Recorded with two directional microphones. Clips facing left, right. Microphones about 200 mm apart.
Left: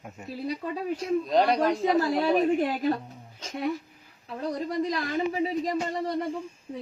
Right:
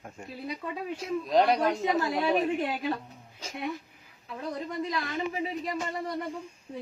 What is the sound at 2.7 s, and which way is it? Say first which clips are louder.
Speech: left 5 dB; 40° left (ahead or behind).